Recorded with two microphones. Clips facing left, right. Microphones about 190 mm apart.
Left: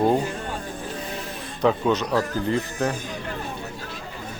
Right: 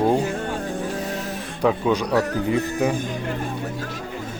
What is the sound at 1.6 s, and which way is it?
A man's voice, 10° right (ahead or behind).